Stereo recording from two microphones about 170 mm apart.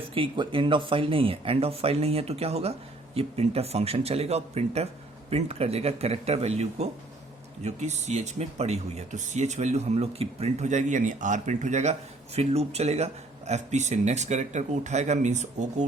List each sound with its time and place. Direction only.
0.1 s speech: 30° right (ahead or behind)